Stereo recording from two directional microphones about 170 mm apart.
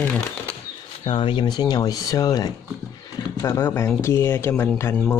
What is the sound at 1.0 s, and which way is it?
Speech, 30° left (ahead or behind).